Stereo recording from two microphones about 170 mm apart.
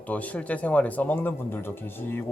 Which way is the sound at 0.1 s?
10° left (ahead or behind).